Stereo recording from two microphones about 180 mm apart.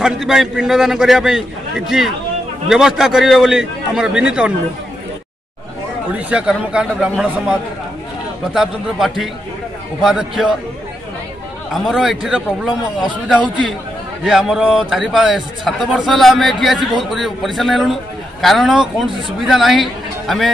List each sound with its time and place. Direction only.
0.0 s speech: 5° right (ahead or behind)
6.1 s speech: 5° right (ahead or behind)
8.5 s speech: centre (ahead or behind)
11.7 s speech: centre (ahead or behind)
14.2 s speech: centre (ahead or behind)